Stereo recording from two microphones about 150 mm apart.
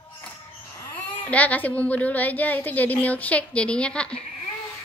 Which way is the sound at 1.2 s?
10° left (ahead or behind).